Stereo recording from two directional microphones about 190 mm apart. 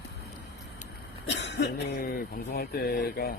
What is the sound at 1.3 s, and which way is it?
Speech, 65° left (ahead or behind).